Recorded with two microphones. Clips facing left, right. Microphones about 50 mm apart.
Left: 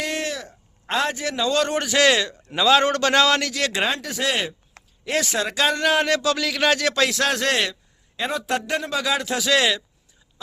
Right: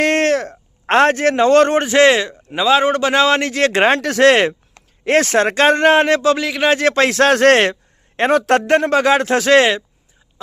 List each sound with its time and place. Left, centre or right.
0.0 s a man's voice: right
3.9 s speech: right
6.7 s a man's voice: right